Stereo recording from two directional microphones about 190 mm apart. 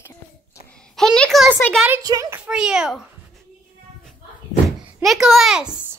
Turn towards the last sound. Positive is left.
turn(degrees=-5)  # may be behind; listen again after turning